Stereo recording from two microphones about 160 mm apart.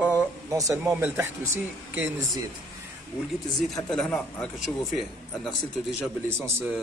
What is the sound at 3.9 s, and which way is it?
Speech, 5° left (ahead or behind).